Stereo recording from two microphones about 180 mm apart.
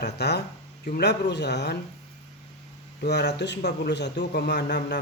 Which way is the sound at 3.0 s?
70° left (ahead or behind).